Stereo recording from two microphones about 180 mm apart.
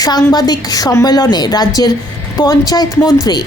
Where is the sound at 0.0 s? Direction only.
20° left (ahead or behind).